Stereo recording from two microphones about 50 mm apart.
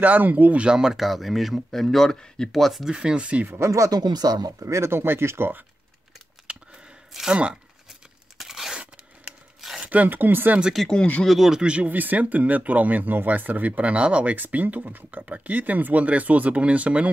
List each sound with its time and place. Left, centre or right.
0.0 s speech: right; by 0.9 s centre
0.9 s speech: centre
2.9 s speech: centre
3.2 s speech: right
3.4 s speech: right
7.1 s speech: centre
8.4 s tearing: centre
9.8 s speech: right
11.2 s speech: centre
11.6 s speech: right
11.9 s speech: right